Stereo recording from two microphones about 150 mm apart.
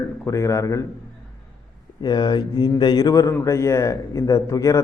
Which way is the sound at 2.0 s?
30° left (ahead or behind).